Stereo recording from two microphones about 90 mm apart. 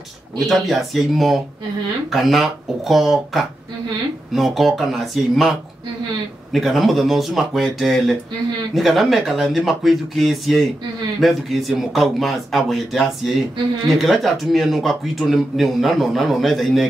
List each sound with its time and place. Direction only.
0.4 s a man's voice: centre (ahead or behind)